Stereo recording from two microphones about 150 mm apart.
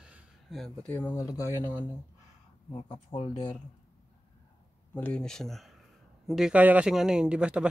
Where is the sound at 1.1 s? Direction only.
20° left (ahead or behind).